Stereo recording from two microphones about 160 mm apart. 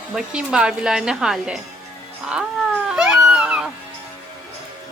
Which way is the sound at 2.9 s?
5° right (ahead or behind).